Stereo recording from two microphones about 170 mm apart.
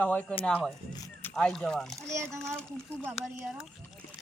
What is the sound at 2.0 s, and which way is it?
Speech, 15° right (ahead or behind).